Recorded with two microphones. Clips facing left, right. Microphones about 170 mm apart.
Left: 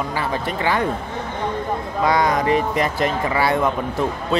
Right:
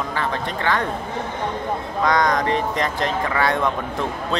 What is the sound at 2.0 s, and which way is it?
Speech, 10° left (ahead or behind).